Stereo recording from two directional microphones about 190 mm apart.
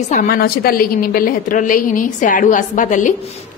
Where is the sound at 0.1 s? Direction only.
45° left (ahead or behind).